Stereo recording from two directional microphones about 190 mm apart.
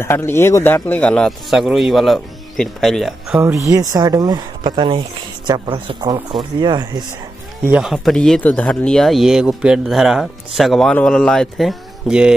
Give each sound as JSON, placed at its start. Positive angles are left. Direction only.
{"t": 0.0, "sound": "speech", "side_deg": 15}
{"t": 7.6, "sound": "speech", "side_deg": -5}